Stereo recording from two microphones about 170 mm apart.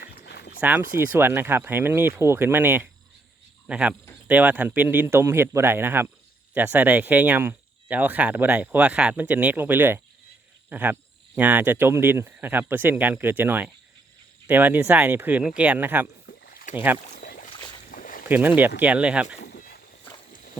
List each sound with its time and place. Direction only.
0.0 s dog: 75° left (ahead or behind)
0.6 s speech: 15° right (ahead or behind)
16.2 s rowboat: 60° left (ahead or behind)
17.2 s boat: 55° left (ahead or behind)
18.3 s speech: 10° right (ahead or behind)
19.5 s a sound: 65° left (ahead or behind)